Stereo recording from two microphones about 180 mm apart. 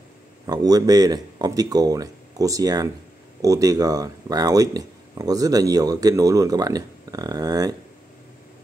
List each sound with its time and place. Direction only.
0.5 s speech: 20° right (ahead or behind)